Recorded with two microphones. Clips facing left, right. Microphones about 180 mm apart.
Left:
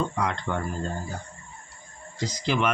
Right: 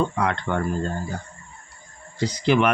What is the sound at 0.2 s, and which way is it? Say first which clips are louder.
Speech: right 4 dB; 65° right (ahead or behind).